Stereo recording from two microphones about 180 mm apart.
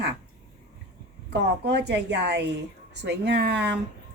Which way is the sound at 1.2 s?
70° right (ahead or behind).